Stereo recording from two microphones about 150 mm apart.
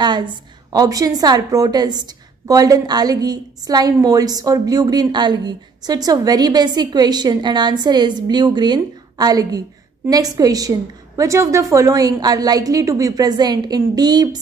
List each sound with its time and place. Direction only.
0.0 s a woman's voice: 30° right (ahead or behind)